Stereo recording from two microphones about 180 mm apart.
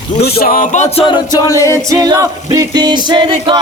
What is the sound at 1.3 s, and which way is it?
Speech, 15° left (ahead or behind).